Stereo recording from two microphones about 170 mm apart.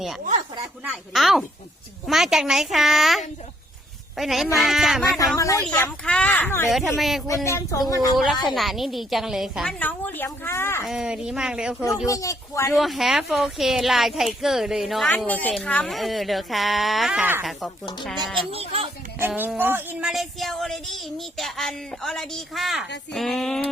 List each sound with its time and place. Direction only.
0.9 s speech: centre (ahead or behind)
5.4 s speech: 20° left (ahead or behind)
6.7 s speech: centre (ahead or behind)
7.4 s speech: 15° left (ahead or behind)
8.1 s speech: centre (ahead or behind)
10.8 s speech: 5° right (ahead or behind)
12.0 s speech: 20° left (ahead or behind)
12.7 s speech: centre (ahead or behind)
18.5 s a child's voice: 35° right (ahead or behind)
19.3 s speech: 5° right (ahead or behind)